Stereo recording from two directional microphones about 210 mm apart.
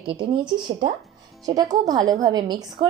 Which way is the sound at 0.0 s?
25° right (ahead or behind).